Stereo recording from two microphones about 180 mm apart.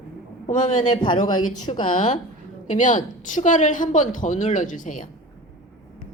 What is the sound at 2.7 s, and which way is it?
A woman's voice, 45° left (ahead or behind).